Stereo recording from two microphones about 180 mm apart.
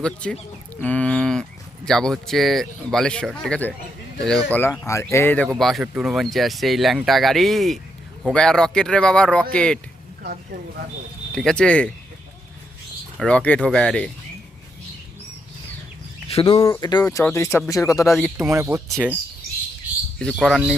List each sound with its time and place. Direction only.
0.0 s speech: 5° left (ahead or behind)
0.8 s cattle: 5° left (ahead or behind)
3.4 s speech: 5° left (ahead or behind)
5.5 s speech: centre (ahead or behind)
11.3 s speech: 5° left (ahead or behind)
13.1 s speech: 5° left (ahead or behind)
16.3 s speech: 25° left (ahead or behind)
18.3 s speech: 15° right (ahead or behind)
20.1 s speech: centre (ahead or behind)